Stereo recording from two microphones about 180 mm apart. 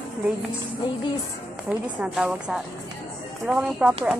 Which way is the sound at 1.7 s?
5° right (ahead or behind).